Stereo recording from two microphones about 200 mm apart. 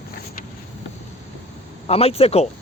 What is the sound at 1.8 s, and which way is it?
Speech, 30° left (ahead or behind).